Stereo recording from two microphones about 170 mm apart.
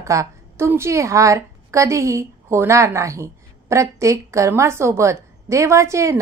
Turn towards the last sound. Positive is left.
turn(degrees=-15)  # may be behind; listen again after turning